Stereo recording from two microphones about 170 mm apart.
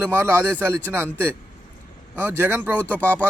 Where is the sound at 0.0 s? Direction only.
15° right (ahead or behind).